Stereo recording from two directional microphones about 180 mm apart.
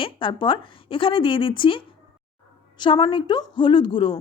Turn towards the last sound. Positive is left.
turn(degrees=30)  # may be behind; listen again after turning